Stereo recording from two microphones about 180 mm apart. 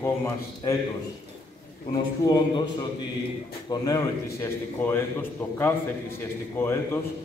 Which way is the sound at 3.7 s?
20° left (ahead or behind).